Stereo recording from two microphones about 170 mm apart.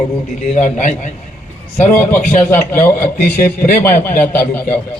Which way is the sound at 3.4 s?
55° left (ahead or behind).